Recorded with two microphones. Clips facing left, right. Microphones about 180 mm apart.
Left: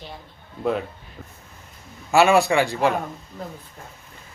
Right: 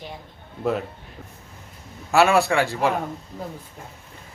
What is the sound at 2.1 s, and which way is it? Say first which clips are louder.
Speech: left 1 dB; centre (ahead or behind).